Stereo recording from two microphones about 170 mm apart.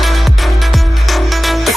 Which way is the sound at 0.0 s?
Centre (ahead or behind).